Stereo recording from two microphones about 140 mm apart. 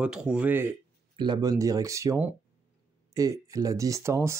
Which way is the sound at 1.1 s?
30° right (ahead or behind).